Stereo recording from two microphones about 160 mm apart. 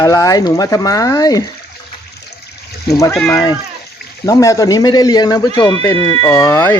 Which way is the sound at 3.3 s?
20° left (ahead or behind).